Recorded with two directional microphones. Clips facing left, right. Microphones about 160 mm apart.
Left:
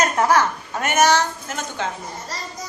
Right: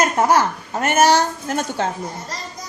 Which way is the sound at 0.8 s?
35° right (ahead or behind).